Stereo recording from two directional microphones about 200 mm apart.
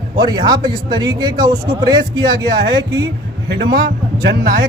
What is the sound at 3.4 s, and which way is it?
Speech, 60° right (ahead or behind).